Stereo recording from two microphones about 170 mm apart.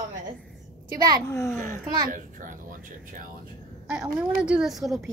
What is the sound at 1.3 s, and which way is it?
Speech, 15° left (ahead or behind).